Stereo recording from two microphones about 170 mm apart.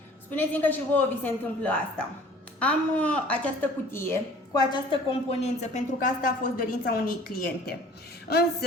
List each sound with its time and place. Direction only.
0.3 s speech: 10° left (ahead or behind)
4.7 s a woman's voice: 35° left (ahead or behind); by 7.8 s 65° left (ahead or behind)